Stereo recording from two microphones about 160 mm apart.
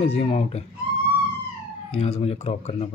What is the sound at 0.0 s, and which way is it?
Speech, 40° left (ahead or behind).